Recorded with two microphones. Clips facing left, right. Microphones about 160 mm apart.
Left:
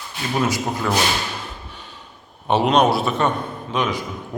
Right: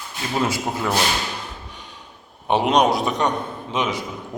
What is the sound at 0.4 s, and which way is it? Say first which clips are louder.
Speech: left 1 dB; 25° right (ahead or behind).